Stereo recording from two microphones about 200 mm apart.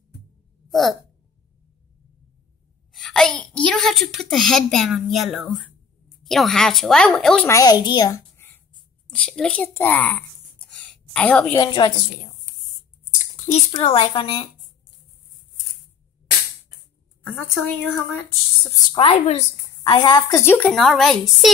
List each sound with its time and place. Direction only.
0.7 s speech: centre (ahead or behind)
2.9 s a woman's voice: centre (ahead or behind)
7.4 s a woman's voice: 15° left (ahead or behind)
11.6 s a woman's voice: 20° left (ahead or behind)
13.4 s a woman's voice: 30° left (ahead or behind)
17.3 s a woman's voice: 5° left (ahead or behind)
18.9 s a woman's voice: 25° left (ahead or behind); by 21.5 s centre (ahead or behind)